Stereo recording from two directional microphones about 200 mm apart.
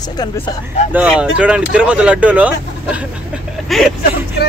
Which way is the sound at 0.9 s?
5° right (ahead or behind).